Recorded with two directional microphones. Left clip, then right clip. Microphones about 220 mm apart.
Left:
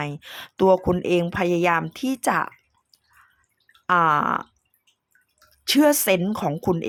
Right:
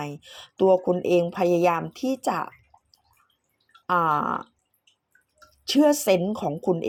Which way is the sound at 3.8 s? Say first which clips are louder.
Left 4 dB; 15° left (ahead or behind).